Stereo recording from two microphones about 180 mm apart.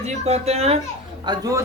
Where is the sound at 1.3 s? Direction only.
20° right (ahead or behind).